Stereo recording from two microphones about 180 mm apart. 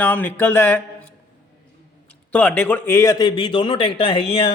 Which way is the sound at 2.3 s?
10° left (ahead or behind).